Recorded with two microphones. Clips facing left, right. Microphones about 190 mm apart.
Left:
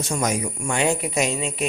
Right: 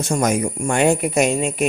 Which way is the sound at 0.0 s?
50° right (ahead or behind).